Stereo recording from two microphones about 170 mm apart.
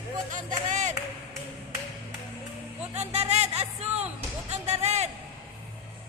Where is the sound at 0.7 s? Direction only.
45° right (ahead or behind).